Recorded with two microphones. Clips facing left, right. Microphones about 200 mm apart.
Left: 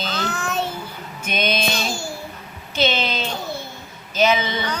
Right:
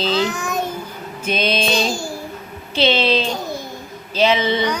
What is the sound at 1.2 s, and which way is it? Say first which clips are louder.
Music: right 3 dB; 30° right (ahead or behind).